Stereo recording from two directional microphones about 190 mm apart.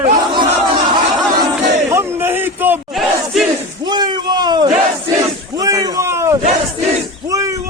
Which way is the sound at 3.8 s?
20° right (ahead or behind).